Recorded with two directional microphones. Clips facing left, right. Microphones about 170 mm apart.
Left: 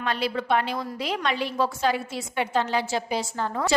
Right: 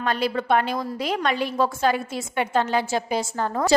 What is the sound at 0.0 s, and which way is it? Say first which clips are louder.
A woman's voice: right 3 dB; 45° right (ahead or behind).